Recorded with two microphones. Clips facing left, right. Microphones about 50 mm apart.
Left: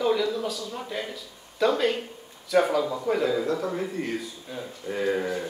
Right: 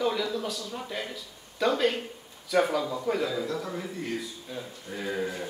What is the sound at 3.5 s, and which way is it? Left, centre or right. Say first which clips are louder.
Speech: left 5 dB; left.